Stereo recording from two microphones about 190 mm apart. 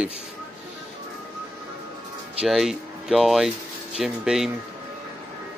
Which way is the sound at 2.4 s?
Centre (ahead or behind).